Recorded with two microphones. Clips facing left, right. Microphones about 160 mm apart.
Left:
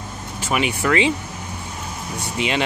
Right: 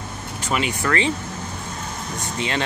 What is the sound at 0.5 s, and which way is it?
Speech, 15° left (ahead or behind).